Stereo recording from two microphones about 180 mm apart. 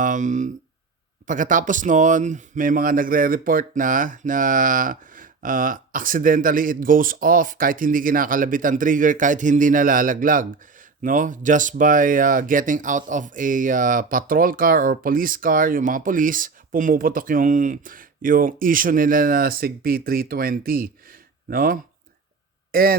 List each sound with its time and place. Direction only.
0.0 s speech: 45° right (ahead or behind)